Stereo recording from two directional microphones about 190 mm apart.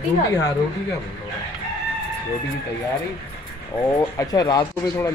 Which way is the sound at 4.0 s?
20° left (ahead or behind).